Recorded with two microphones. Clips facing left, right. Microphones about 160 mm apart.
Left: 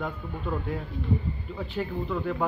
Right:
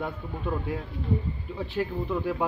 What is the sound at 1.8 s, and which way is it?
Speech, 10° right (ahead or behind).